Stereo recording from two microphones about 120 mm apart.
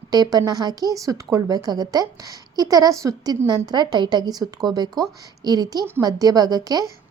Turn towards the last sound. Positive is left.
turn(degrees=-35)  # may be behind; listen again after turning